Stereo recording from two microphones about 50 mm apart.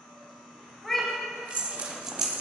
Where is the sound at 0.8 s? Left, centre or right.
Centre.